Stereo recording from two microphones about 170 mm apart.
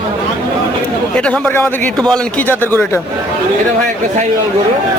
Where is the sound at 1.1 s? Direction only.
5° left (ahead or behind).